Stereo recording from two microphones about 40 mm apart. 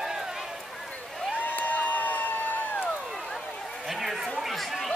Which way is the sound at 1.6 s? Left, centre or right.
Left.